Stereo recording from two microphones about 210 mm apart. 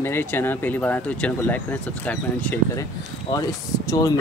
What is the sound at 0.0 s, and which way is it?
Speech, 10° left (ahead or behind).